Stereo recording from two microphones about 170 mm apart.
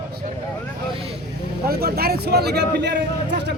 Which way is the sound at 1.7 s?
65° right (ahead or behind).